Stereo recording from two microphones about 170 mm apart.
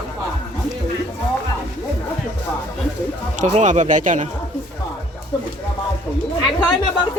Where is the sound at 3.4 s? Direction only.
40° right (ahead or behind).